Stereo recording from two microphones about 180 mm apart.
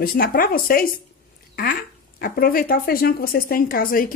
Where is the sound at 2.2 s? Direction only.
55° left (ahead or behind).